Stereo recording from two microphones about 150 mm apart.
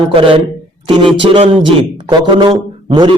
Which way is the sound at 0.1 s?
35° right (ahead or behind).